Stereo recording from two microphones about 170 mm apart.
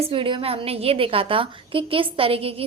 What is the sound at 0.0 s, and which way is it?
A woman's voice, 30° right (ahead or behind).